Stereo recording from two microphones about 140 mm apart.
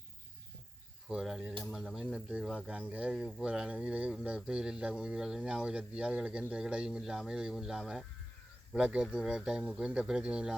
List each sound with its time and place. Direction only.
1.0 s speech: 5° right (ahead or behind)